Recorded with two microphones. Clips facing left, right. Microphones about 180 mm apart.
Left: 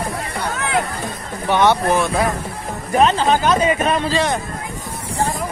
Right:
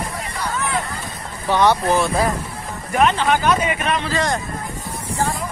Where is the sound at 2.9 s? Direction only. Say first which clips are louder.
Left 2 dB; 30° left (ahead or behind).